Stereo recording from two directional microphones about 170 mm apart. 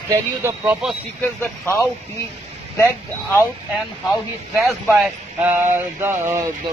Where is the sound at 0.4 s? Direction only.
15° right (ahead or behind).